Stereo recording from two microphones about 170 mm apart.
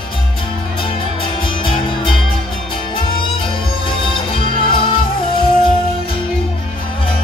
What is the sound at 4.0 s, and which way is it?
Music, 30° left (ahead or behind).